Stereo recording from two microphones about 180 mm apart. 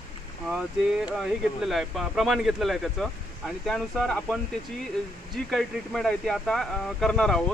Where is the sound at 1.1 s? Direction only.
Centre (ahead or behind).